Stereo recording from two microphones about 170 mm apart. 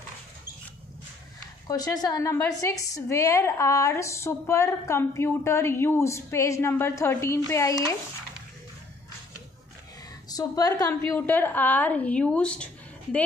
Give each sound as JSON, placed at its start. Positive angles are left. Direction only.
{"t": 1.7, "sound": "a woman's voice", "side_deg": 20}
{"t": 10.2, "sound": "a woman's voice", "side_deg": 20}